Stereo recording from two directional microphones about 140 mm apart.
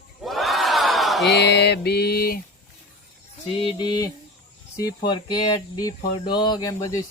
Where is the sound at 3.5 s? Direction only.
35° left (ahead or behind).